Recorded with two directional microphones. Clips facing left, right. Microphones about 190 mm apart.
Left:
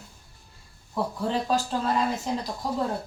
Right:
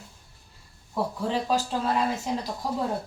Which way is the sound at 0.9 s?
5° right (ahead or behind).